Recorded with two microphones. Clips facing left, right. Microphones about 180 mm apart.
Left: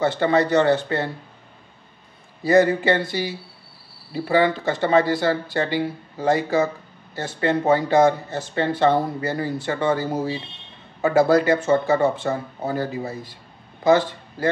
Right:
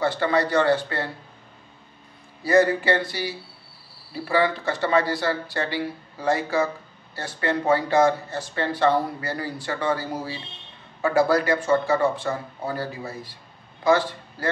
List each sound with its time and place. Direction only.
0.0 s speech: 25° left (ahead or behind)
2.4 s a man's voice: 20° left (ahead or behind)